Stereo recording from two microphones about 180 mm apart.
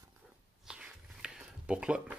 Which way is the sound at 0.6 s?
5° right (ahead or behind).